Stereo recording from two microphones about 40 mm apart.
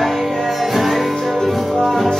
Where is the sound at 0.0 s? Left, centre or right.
Centre.